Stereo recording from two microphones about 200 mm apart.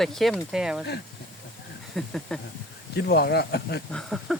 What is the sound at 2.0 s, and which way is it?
Speech, centre (ahead or behind).